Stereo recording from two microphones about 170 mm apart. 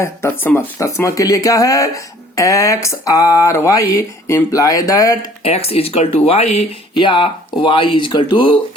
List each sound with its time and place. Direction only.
0.0 s speech: 15° left (ahead or behind)
5.4 s speech: 35° left (ahead or behind)